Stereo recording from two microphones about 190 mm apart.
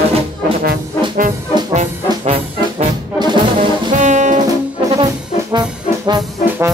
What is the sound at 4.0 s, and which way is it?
Music, 40° right (ahead or behind).